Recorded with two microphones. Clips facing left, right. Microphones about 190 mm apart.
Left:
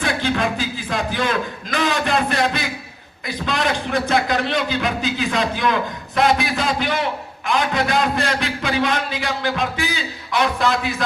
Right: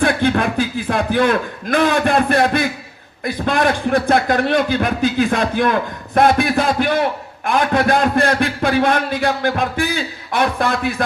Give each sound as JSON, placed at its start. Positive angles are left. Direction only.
{"t": 0.0, "sound": "a man's voice", "side_deg": -55}